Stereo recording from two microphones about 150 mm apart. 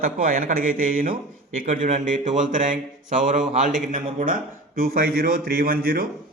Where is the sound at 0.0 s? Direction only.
70° right (ahead or behind).